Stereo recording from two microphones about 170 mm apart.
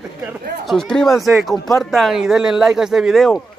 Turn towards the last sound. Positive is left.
turn(degrees=0)  # may be behind; listen again after turning